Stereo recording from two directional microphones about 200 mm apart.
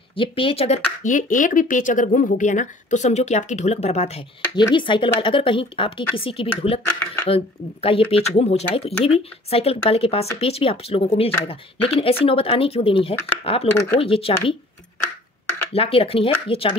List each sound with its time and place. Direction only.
0.1 s speech: 25° left (ahead or behind)
15.7 s speech: 30° left (ahead or behind)